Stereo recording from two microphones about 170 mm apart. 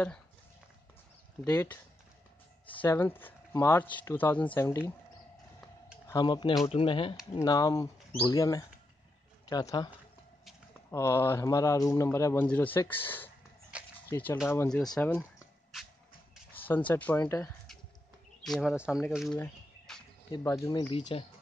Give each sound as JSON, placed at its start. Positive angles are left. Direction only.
{"t": 1.4, "sound": "speech", "side_deg": 10}
{"t": 6.0, "sound": "speech", "side_deg": 25}
{"t": 7.3, "sound": "speech", "side_deg": 20}
{"t": 10.9, "sound": "speech", "side_deg": 15}
{"t": 13.7, "sound": "a sound", "side_deg": -5}
{"t": 14.0, "sound": "speech", "side_deg": 15}
{"t": 16.5, "sound": "speech", "side_deg": 10}
{"t": 18.4, "sound": "speech", "side_deg": 0}
{"t": 20.2, "sound": "speech", "side_deg": 20}
{"t": 21.1, "sound": "speech", "side_deg": 30}